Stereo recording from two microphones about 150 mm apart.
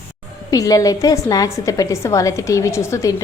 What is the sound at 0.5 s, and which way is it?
A woman's voice, 25° left (ahead or behind).